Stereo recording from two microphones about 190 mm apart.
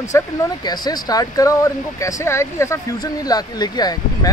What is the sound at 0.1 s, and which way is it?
Speech, 20° left (ahead or behind).